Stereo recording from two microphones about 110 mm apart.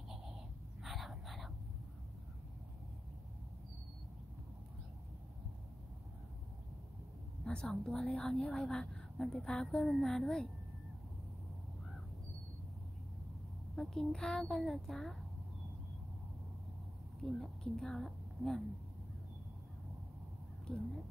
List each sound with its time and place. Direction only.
0.1 s a sound: 5° right (ahead or behind)
7.4 s a woman's voice: 5° left (ahead or behind)
13.7 s a woman's voice: 5° left (ahead or behind)
17.2 s speech: 5° left (ahead or behind)
20.6 s speech: 5° left (ahead or behind)